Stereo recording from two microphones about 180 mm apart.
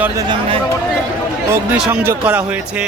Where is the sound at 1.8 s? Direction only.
10° right (ahead or behind).